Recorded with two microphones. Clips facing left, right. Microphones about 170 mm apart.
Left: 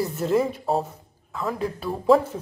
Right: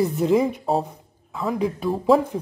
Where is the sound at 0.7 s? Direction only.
Centre (ahead or behind).